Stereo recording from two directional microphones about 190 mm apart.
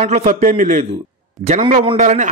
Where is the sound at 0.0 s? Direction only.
35° right (ahead or behind).